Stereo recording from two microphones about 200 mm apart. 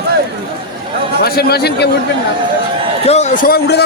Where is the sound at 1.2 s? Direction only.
50° left (ahead or behind).